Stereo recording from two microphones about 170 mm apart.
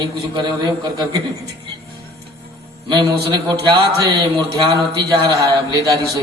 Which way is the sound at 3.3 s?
25° right (ahead or behind).